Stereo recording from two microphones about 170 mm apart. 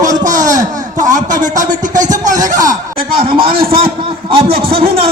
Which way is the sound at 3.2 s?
60° right (ahead or behind).